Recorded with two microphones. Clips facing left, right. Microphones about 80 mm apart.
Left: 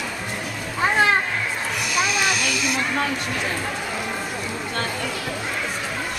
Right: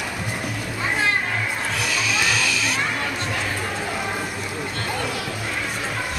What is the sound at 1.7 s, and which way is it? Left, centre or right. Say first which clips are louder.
Music: left 3 dB; centre.